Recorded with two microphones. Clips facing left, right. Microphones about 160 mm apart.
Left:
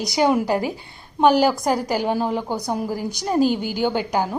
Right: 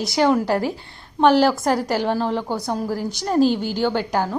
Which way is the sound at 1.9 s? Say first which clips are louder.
Even; 10° left (ahead or behind).